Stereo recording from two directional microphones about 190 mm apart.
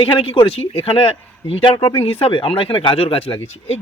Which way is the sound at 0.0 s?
30° left (ahead or behind).